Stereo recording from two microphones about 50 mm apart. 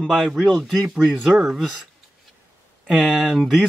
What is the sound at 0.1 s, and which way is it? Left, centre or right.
Speech, centre.